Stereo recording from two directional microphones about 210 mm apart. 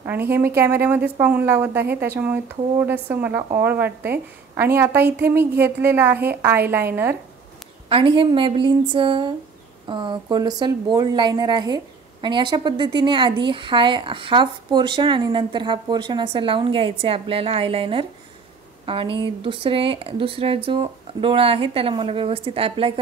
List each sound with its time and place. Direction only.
0.0 s a woman's voice: 10° right (ahead or behind)
7.9 s a woman's voice: 25° right (ahead or behind)